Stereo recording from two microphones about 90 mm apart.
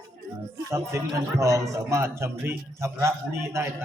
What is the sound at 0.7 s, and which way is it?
A man's voice, 35° right (ahead or behind).